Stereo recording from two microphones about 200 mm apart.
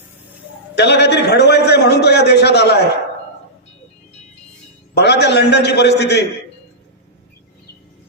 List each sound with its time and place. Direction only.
0.8 s a man's voice: 55° left (ahead or behind)
4.9 s a man's voice: 55° left (ahead or behind)